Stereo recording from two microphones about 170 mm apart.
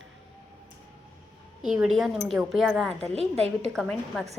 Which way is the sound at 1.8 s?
Centre (ahead or behind).